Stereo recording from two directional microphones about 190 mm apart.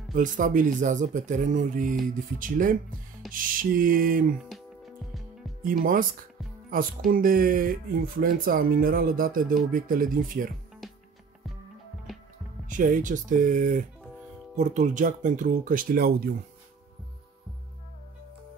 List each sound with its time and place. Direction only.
0.1 s speech: 40° right (ahead or behind)
4.5 s music: centre (ahead or behind)
5.6 s speech: 45° right (ahead or behind)
7.1 s speech: 50° right (ahead or behind)
10.8 s music: centre (ahead or behind)
12.1 s music: centre (ahead or behind)
12.6 s speech: 45° right (ahead or behind)